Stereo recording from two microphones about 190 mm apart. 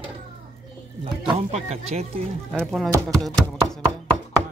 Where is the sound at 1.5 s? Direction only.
35° right (ahead or behind).